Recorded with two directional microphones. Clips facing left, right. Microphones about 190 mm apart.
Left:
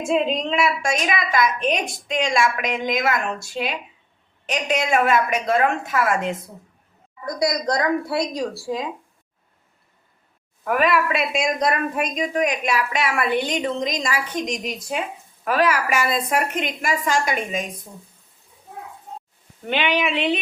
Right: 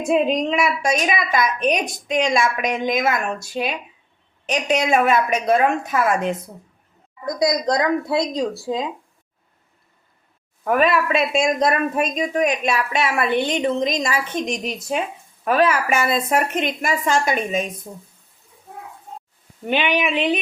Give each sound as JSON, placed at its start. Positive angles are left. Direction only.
{"t": 0.0, "sound": "a woman's voice", "side_deg": -15}
{"t": 7.3, "sound": "a woman's voice", "side_deg": -20}
{"t": 10.6, "sound": "a woman's voice", "side_deg": -25}
{"t": 19.7, "sound": "speech", "side_deg": -15}